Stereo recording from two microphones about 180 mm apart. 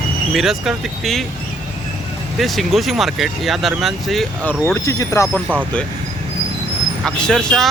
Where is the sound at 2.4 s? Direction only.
Centre (ahead or behind).